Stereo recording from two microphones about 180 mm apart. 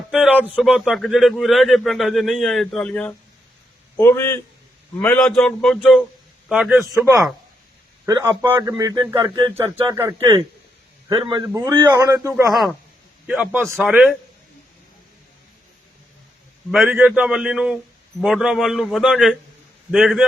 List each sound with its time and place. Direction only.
0.1 s a man's voice: 5° right (ahead or behind); by 4.4 s 15° left (ahead or behind)
5.1 s a man's voice: 5° left (ahead or behind)
8.0 s a man's voice: 20° right (ahead or behind)
11.1 s a man's voice: 25° right (ahead or behind); by 14.2 s 5° right (ahead or behind)
16.7 s a man's voice: 5° right (ahead or behind)